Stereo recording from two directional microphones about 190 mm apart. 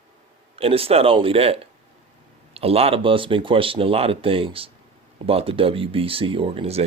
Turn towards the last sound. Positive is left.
turn(degrees=-30)  # may be behind; listen again after turning